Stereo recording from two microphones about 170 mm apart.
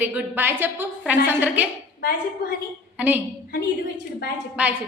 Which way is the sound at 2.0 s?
65° left (ahead or behind).